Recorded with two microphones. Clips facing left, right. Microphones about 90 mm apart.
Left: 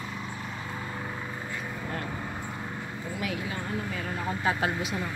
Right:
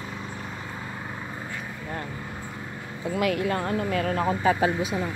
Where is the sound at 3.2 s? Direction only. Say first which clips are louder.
Right 10 dB; 65° right (ahead or behind); by 4.3 s 80° right.